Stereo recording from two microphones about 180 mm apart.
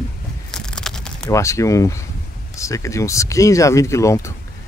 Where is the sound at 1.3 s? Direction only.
15° left (ahead or behind).